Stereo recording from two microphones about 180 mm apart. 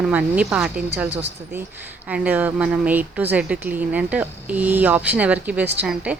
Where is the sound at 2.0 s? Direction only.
10° right (ahead or behind).